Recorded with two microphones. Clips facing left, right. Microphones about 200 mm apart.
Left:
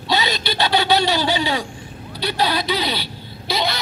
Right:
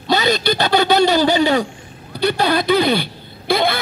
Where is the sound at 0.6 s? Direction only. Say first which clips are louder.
Right 3 dB; 45° right (ahead or behind).